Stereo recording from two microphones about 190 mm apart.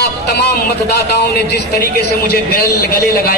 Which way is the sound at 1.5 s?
60° left (ahead or behind).